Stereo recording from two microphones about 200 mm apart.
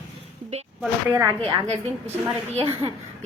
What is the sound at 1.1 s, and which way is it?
Speech, 15° right (ahead or behind).